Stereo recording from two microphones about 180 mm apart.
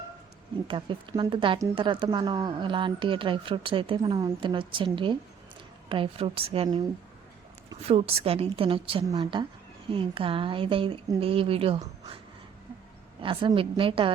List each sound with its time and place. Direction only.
0.7 s a woman's voice: 25° right (ahead or behind)
13.2 s a woman's voice: 30° right (ahead or behind)